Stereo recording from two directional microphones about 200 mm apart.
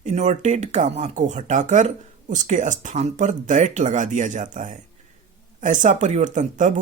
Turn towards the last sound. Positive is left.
turn(degrees=-40)  # may be behind; listen again after turning